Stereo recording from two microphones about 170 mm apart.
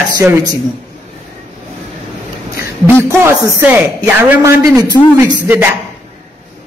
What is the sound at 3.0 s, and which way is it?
A man's voice, 15° right (ahead or behind).